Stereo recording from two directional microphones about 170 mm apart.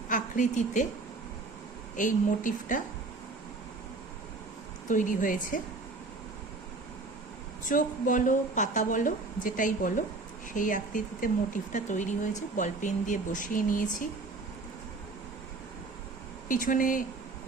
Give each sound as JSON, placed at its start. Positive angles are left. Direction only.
{"t": 0.1, "sound": "a woman's voice", "side_deg": 45}
{"t": 2.0, "sound": "speech", "side_deg": 50}
{"t": 4.9, "sound": "speech", "side_deg": 50}
{"t": 7.6, "sound": "speech", "side_deg": 50}
{"t": 16.5, "sound": "speech", "side_deg": 50}